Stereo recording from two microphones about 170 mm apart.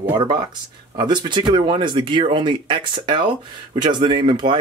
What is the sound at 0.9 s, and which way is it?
Speech, 25° right (ahead or behind).